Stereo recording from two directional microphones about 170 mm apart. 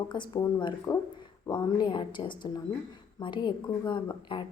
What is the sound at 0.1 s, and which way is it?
A woman's voice, 25° left (ahead or behind).